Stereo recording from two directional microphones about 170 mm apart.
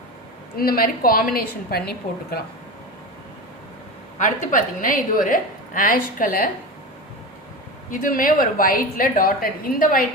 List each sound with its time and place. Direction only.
0.5 s a woman's voice: 60° left (ahead or behind)
4.2 s a woman's voice: 50° left (ahead or behind)
7.9 s a woman's voice: 55° left (ahead or behind)